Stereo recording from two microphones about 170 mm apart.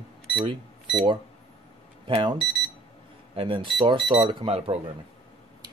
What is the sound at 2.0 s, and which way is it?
Speech, 30° right (ahead or behind).